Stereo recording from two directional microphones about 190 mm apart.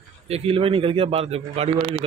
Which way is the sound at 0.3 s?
30° right (ahead or behind).